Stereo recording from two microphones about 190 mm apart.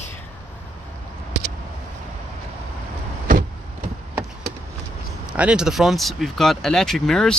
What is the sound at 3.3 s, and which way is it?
Vehicle, 45° right (ahead or behind).